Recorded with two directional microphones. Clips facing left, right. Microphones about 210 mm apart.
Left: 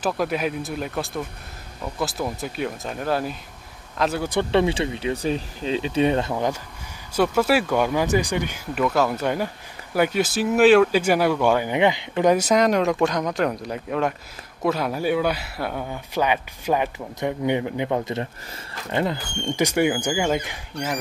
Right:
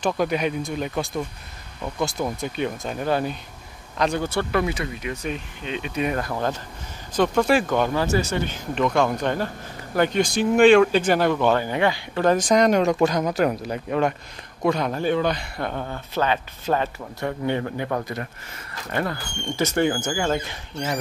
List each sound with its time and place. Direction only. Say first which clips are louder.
0.0 s speech: right 1 dB; centre (ahead or behind)
4.3 s speech: left 3 dB; 25° left (ahead or behind)
6.3 s speech: left 1 dB; 15° left (ahead or behind)